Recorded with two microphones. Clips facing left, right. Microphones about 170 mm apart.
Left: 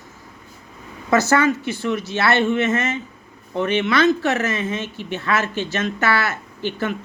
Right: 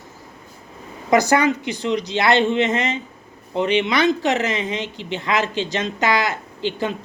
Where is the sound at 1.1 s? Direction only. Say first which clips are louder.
Right 1 dB; 15° right (ahead or behind).